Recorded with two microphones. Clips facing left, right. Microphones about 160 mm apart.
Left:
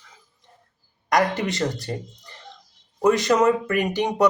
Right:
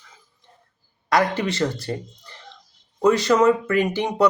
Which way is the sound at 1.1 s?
20° left (ahead or behind).